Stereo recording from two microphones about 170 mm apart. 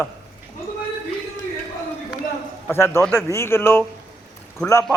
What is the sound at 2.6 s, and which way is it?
A man's voice, 15° left (ahead or behind).